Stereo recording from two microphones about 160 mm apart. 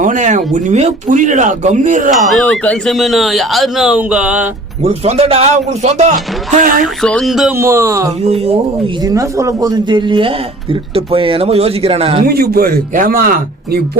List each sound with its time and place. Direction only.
0.0 s a man's voice: 50° right (ahead or behind)
2.2 s speech: centre (ahead or behind)
4.8 s speech: 35° right (ahead or behind)
6.5 s speech: 60° right (ahead or behind)
6.8 s speech: 5° left (ahead or behind)
7.5 s speech: 15° right (ahead or behind)
8.2 s speech: 40° right (ahead or behind)
9.0 s speech: 20° right (ahead or behind); by 12.2 s 35° right (ahead or behind)
12.2 s speech: 70° right (ahead or behind)